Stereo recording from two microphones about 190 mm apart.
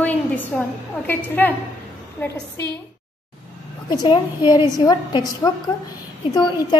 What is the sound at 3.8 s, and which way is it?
A woman's voice, 25° left (ahead or behind).